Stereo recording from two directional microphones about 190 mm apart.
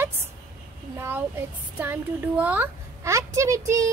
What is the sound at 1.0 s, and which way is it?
Speech, 10° right (ahead or behind).